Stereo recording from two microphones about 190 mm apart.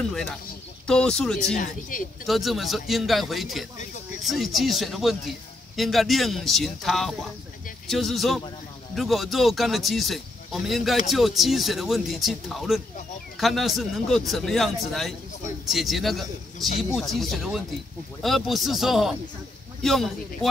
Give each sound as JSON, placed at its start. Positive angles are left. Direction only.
{"t": 0.0, "sound": "speech", "side_deg": 0}
{"t": 1.6, "sound": "speech", "side_deg": 45}
{"t": 2.2, "sound": "a man's voice", "side_deg": 0}